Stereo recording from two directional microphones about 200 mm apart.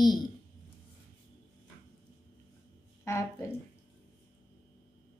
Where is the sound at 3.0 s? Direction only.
15° left (ahead or behind).